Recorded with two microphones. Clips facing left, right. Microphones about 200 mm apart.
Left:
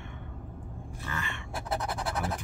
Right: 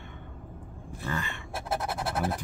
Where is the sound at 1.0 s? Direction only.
35° right (ahead or behind).